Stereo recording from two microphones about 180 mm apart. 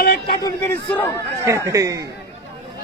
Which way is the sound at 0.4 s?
10° left (ahead or behind).